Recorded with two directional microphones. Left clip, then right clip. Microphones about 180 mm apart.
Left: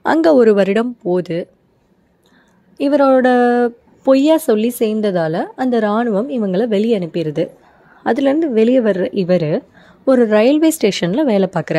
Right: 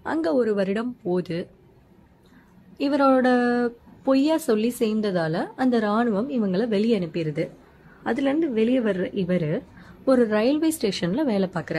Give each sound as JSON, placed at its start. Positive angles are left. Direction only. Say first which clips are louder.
{"t": 0.0, "sound": "a woman's voice", "louder": "left 12 dB", "side_deg": 50}
{"t": 2.8, "sound": "a woman's voice", "louder": "left 8 dB", "side_deg": 35}